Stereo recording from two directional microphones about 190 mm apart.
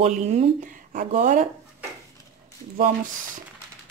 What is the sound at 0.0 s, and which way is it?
Speech, 35° right (ahead or behind).